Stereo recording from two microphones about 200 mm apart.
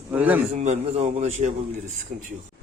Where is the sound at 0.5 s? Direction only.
35° right (ahead or behind).